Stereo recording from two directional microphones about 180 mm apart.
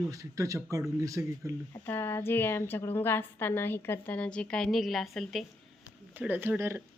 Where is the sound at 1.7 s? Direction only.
10° left (ahead or behind).